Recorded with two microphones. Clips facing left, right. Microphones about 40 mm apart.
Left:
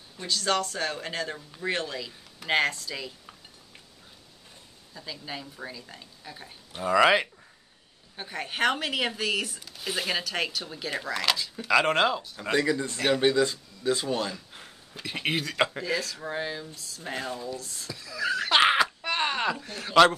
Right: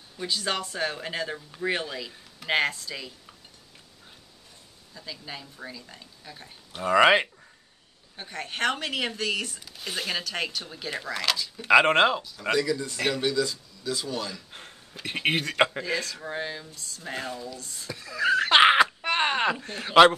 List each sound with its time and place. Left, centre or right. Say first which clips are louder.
0.2 s speech: left 2 dB; centre
4.9 s speech: left 1 dB; centre
6.8 s speech: right 2 dB; centre
8.2 s speech: left 1 dB; centre
11.6 s speech: right 4 dB; right
12.2 s speech: right 1 dB; left
15.0 s speech: right 3 dB; right
15.8 s speech: even; centre
18.0 s wail: right 5 dB; right
18.6 s a sound: right 3 dB; centre